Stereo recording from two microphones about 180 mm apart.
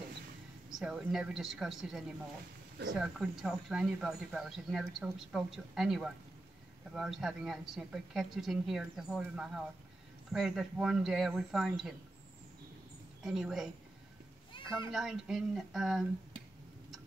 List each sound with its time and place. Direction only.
0.7 s speech: centre (ahead or behind)
13.2 s speech: centre (ahead or behind)
14.5 s a sound: 25° left (ahead or behind)
14.9 s speech: centre (ahead or behind)